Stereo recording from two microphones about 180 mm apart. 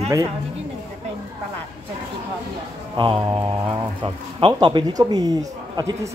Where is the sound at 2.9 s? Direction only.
25° right (ahead or behind).